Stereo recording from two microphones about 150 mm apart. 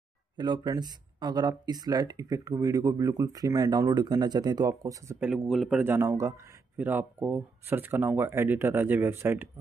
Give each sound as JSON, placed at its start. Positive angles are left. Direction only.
{"t": 0.4, "sound": "speech", "side_deg": -30}
{"t": 5.2, "sound": "speech", "side_deg": 0}
{"t": 5.9, "sound": "speech", "side_deg": -15}